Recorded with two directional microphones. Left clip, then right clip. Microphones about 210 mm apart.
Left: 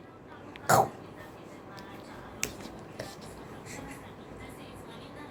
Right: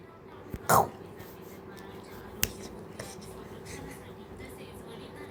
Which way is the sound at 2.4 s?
25° right (ahead or behind).